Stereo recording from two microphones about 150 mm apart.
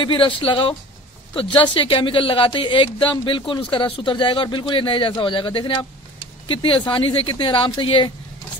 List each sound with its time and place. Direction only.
0.0 s speech: 35° left (ahead or behind)